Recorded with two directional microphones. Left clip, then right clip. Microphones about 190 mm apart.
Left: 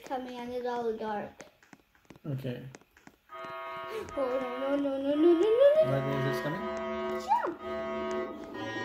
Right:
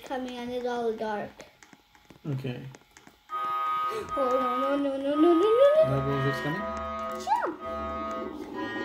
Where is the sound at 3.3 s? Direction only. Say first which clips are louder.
Right 11 dB; 40° right (ahead or behind).